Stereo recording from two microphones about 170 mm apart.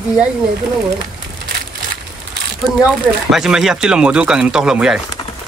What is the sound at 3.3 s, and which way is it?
Speech, 5° right (ahead or behind).